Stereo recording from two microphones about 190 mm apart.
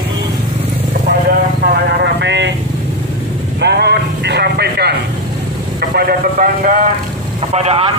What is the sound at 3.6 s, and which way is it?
Speech, 60° right (ahead or behind).